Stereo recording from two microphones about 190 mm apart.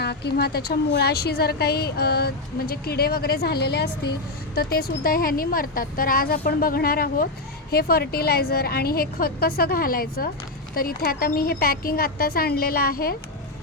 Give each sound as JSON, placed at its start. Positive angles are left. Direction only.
{"t": 0.0, "sound": "a woman's voice", "side_deg": 60}